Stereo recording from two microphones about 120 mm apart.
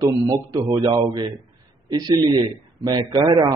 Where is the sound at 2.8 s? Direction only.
35° right (ahead or behind).